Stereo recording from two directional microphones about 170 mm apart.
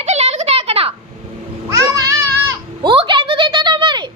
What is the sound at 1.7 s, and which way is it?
Babbling, 20° right (ahead or behind).